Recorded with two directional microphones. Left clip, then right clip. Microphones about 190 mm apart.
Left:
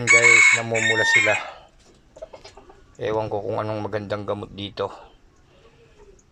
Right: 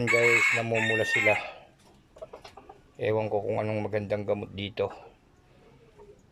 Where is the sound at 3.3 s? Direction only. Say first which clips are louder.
Left 3 dB; 10° right (ahead or behind).